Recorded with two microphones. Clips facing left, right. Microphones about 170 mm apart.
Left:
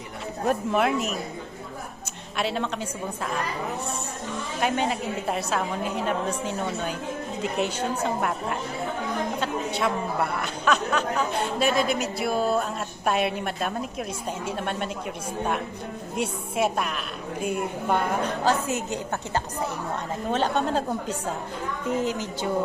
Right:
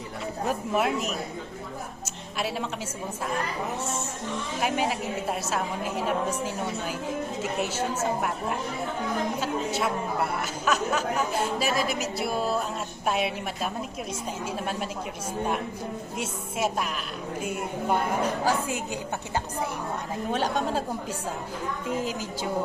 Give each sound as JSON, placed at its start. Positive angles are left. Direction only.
{"t": 0.4, "sound": "a woman's voice", "side_deg": 0}
{"t": 2.4, "sound": "a woman's voice", "side_deg": -5}
{"t": 4.6, "sound": "a woman's voice", "side_deg": -5}
{"t": 16.1, "sound": "speech", "side_deg": 60}
{"t": 16.6, "sound": "a woman's voice", "side_deg": 0}
{"t": 20.3, "sound": "a woman's voice", "side_deg": -5}